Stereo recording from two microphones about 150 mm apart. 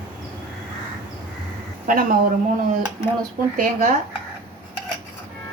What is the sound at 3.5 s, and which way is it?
Speech, 70° right (ahead or behind).